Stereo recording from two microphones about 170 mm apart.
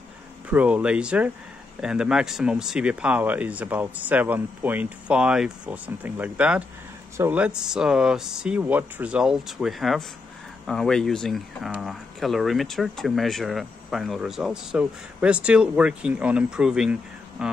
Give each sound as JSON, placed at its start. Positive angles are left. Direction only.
{"t": 0.5, "sound": "speech", "side_deg": -10}